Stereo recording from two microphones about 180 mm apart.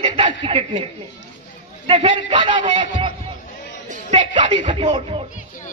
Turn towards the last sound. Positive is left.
turn(degrees=-30)  # may be behind; listen again after turning